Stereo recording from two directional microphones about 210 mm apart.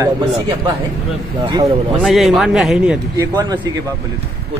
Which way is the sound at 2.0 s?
Centre (ahead or behind).